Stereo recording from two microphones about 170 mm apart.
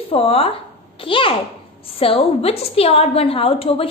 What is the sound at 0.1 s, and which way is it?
A child's voice, 35° left (ahead or behind).